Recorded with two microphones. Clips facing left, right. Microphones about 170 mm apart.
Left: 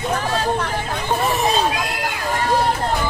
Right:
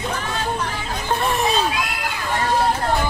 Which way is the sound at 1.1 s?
Centre (ahead or behind).